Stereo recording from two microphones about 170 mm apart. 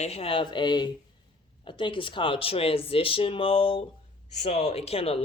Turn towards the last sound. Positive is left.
turn(degrees=35)  # may be behind; listen again after turning